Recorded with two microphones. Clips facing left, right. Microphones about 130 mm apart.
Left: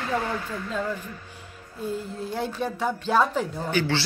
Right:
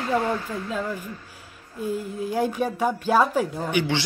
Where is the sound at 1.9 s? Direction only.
10° right (ahead or behind).